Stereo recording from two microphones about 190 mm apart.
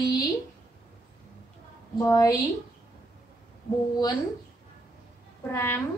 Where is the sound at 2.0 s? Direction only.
20° left (ahead or behind).